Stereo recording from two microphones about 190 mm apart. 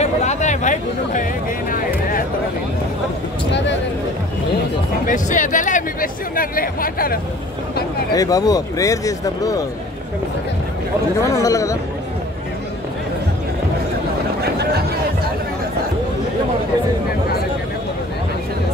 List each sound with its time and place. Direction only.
0.0 s speech: 35° left (ahead or behind)
5.0 s speech: 45° left (ahead or behind)
8.1 s speech: 20° left (ahead or behind)
11.2 s speech: 15° left (ahead or behind)
14.4 s a sound: 55° right (ahead or behind)